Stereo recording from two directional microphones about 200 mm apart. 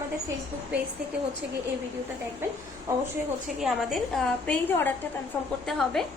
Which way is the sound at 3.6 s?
Centre (ahead or behind).